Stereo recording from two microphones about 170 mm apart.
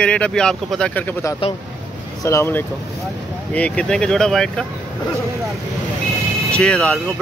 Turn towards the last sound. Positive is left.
turn(degrees=5)  # may be behind; listen again after turning